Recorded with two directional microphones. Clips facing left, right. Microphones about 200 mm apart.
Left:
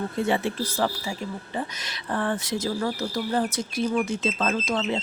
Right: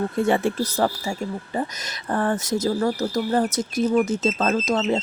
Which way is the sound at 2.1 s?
45° right (ahead or behind).